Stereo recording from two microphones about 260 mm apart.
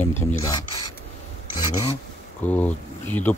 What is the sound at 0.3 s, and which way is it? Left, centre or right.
Speech, centre.